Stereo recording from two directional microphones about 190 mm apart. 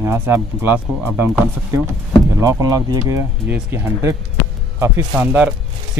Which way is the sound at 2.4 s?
15° right (ahead or behind).